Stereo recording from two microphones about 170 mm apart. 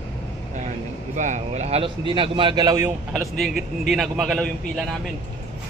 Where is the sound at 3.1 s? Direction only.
Centre (ahead or behind).